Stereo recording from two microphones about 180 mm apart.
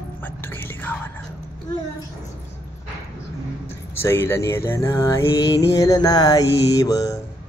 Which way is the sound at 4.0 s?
15° left (ahead or behind).